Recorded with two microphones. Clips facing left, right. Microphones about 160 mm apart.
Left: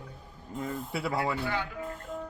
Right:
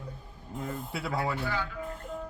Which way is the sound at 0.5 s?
Centre (ahead or behind).